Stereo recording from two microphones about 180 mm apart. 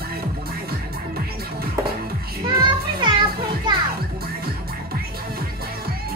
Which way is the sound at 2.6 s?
25° right (ahead or behind).